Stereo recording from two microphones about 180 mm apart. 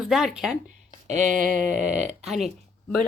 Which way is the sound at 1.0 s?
40° right (ahead or behind).